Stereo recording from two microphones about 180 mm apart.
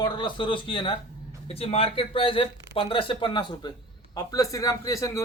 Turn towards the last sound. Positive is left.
turn(degrees=20)  # may be behind; listen again after turning